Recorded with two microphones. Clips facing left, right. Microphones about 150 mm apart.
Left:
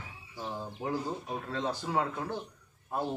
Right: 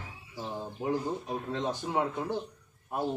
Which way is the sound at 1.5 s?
20° right (ahead or behind).